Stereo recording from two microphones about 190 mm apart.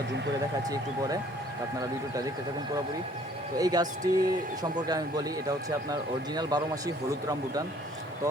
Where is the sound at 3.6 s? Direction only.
20° right (ahead or behind).